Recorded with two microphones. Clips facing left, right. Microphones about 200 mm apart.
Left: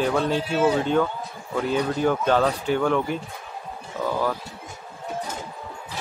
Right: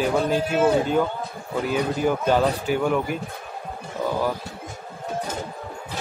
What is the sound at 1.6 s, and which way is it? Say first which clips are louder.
Speech: even; 10° right (ahead or behind).